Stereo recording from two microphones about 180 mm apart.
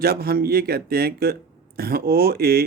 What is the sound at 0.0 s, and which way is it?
Speech, 60° right (ahead or behind).